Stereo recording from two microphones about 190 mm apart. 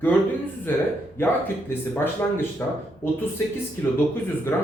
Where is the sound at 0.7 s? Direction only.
10° left (ahead or behind).